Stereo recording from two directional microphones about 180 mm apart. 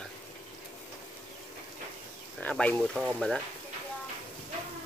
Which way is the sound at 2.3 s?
5° left (ahead or behind).